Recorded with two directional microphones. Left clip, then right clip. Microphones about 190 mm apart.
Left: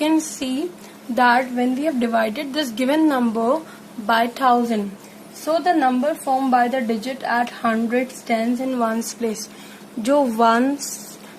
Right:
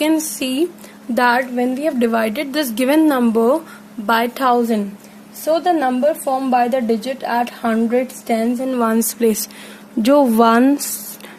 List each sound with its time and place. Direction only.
0.0 s a woman's voice: 50° right (ahead or behind)
10.0 s a woman's voice: 45° right (ahead or behind)